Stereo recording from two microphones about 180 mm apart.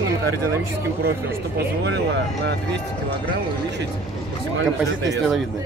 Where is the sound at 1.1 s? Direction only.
65° right (ahead or behind).